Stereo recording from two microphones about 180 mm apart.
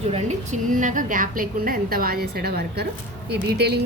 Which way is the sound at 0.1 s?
45° right (ahead or behind).